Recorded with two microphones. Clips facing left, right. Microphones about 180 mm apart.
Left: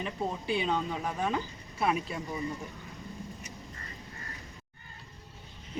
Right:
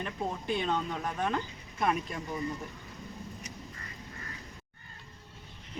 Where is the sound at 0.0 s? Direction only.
10° left (ahead or behind).